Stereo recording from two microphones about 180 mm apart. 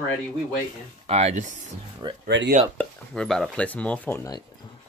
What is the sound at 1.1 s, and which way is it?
Speech, 35° right (ahead or behind).